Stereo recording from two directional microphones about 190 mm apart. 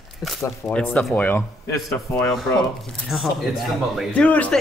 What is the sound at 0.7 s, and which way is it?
Speech, 5° left (ahead or behind).